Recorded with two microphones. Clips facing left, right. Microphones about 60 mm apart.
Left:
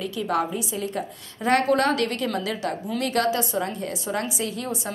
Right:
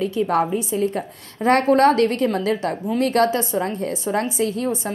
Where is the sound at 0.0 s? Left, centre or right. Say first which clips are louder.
Right 5 dB; right.